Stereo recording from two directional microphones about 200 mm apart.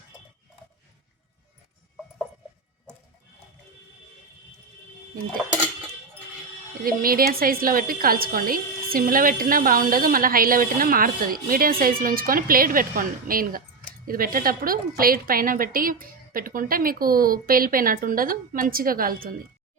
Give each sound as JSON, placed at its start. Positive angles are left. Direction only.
{"t": 6.8, "sound": "a woman's voice", "side_deg": -45}